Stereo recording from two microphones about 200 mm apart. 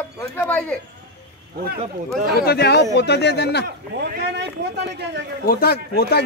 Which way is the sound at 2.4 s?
55° left (ahead or behind).